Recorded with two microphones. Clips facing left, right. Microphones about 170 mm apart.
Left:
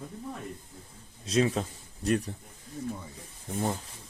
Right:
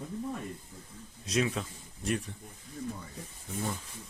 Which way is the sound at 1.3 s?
30° left (ahead or behind).